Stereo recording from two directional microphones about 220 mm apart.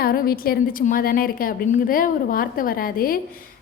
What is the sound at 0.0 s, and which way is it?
A woman's voice, 45° left (ahead or behind).